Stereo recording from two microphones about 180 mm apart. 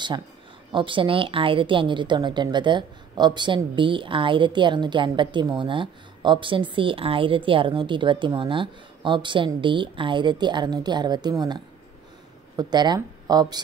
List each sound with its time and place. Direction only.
0.7 s a woman's voice: 30° right (ahead or behind)